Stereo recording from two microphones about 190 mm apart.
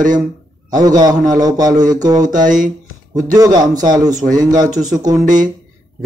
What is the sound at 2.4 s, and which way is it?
Speech, 45° right (ahead or behind).